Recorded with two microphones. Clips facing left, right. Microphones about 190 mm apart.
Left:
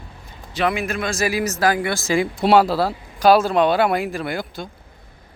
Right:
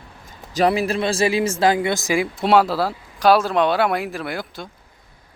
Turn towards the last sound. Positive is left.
turn(degrees=0)  # may be behind; listen again after turning